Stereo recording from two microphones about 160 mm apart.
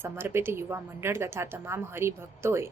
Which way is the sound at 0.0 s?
15° right (ahead or behind).